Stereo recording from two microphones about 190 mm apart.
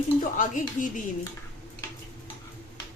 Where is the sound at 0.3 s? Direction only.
45° left (ahead or behind).